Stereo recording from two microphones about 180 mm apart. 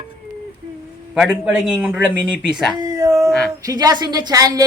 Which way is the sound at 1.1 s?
5° right (ahead or behind).